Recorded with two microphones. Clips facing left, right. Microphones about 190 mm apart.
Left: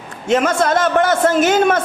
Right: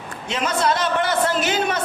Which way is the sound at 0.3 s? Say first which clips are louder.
Left 6 dB; 50° left (ahead or behind).